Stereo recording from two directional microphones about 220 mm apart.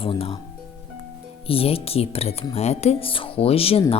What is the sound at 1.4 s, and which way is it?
A woman's voice, 25° left (ahead or behind).